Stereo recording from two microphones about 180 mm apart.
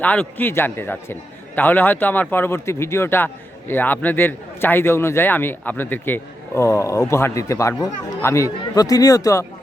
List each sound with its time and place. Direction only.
0.0 s a man's voice: 10° left (ahead or behind)